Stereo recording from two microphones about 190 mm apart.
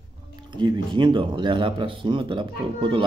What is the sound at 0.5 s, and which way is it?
Speech, 25° right (ahead or behind).